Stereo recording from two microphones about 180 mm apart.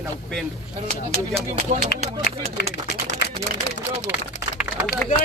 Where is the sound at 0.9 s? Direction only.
35° right (ahead or behind).